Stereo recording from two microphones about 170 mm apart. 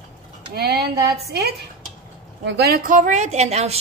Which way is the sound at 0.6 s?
70° right (ahead or behind).